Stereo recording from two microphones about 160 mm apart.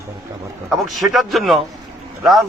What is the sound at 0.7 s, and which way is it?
A man's voice, centre (ahead or behind).